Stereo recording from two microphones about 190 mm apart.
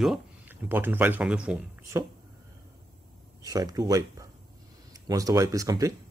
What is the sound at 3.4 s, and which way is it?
Speech, 20° right (ahead or behind).